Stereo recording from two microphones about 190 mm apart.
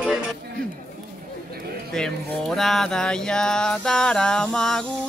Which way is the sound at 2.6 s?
Centre (ahead or behind).